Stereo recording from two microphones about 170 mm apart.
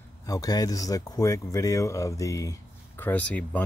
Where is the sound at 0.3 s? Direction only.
20° left (ahead or behind).